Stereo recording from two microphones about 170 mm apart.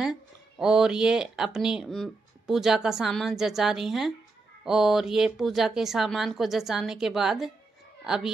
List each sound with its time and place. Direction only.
0.0 s a woman's voice: 5° right (ahead or behind)